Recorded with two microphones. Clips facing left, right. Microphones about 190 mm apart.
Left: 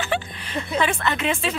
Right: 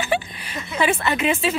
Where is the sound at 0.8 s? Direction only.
10° right (ahead or behind).